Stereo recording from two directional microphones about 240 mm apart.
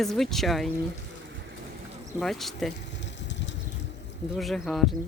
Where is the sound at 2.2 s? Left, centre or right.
Centre.